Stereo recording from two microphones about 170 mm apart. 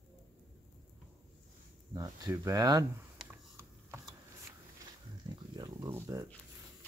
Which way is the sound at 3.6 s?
15° right (ahead or behind).